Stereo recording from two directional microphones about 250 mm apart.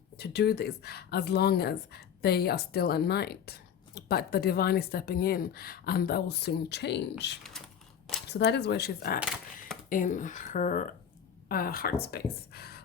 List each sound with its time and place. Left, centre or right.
0.2 s speech: left